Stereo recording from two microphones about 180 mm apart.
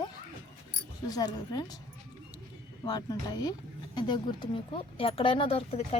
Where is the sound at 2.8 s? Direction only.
20° left (ahead or behind).